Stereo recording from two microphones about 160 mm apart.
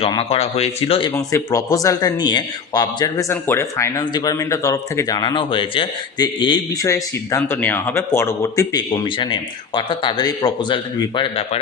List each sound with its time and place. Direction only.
0.0 s speech: 35° left (ahead or behind)
1.1 s a man's voice: 20° left (ahead or behind)